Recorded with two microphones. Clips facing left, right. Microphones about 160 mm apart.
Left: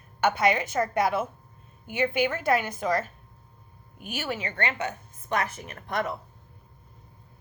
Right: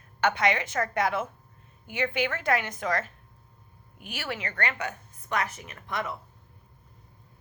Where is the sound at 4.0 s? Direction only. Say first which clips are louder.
Left 3 dB; 25° left (ahead or behind).